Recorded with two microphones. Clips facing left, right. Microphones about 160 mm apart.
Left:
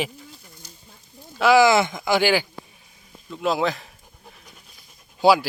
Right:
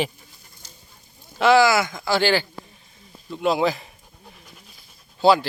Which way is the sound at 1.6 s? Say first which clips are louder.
Left 2 dB; 20° left (ahead or behind).